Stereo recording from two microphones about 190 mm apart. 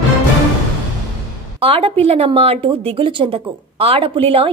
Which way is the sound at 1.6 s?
30° right (ahead or behind).